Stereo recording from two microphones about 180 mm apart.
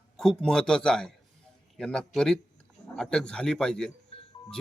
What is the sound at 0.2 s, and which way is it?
A man's voice, centre (ahead or behind).